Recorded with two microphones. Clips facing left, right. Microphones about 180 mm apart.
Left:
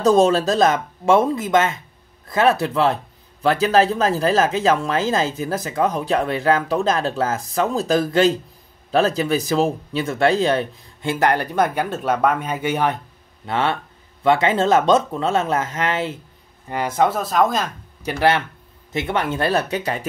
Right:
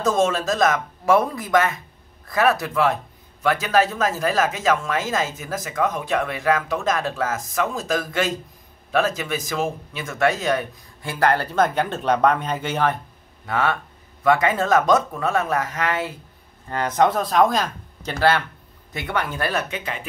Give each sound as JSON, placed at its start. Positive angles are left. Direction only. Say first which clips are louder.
{"t": 0.0, "sound": "speech", "louder": "left 5 dB", "side_deg": 35}
{"t": 13.5, "sound": "speech", "louder": "left 1 dB", "side_deg": 25}
{"t": 16.6, "sound": "speech", "louder": "even", "side_deg": 10}
{"t": 18.0, "sound": "speech", "louder": "left 2 dB", "side_deg": 20}